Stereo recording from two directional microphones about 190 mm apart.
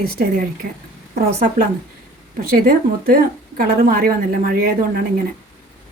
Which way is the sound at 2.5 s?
50° right (ahead or behind).